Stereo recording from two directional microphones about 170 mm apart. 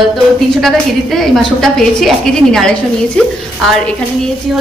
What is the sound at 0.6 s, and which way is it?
A woman's voice, centre (ahead or behind).